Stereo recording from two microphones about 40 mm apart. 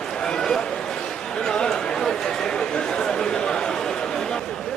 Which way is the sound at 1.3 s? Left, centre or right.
Centre.